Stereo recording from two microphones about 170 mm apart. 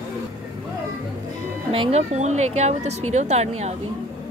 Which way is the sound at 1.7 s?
35° right (ahead or behind).